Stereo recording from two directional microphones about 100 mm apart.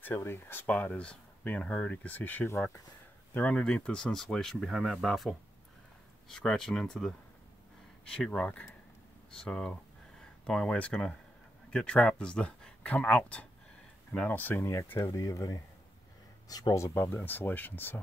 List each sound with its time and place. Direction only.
0.0 s speech: 20° left (ahead or behind)
3.3 s speech: 10° left (ahead or behind)
6.3 s speech: 5° left (ahead or behind)